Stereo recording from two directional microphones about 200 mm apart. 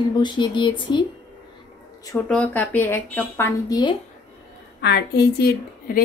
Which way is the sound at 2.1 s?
5° left (ahead or behind).